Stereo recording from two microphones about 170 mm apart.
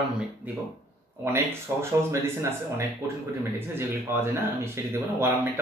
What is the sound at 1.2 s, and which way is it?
Speech, 15° right (ahead or behind).